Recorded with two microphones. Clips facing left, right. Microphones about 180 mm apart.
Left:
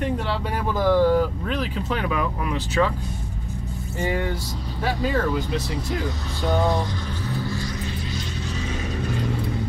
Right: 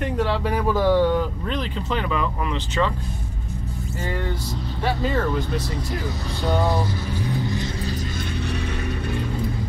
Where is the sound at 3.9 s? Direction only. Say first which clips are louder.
Left 4 dB; 10° left (ahead or behind).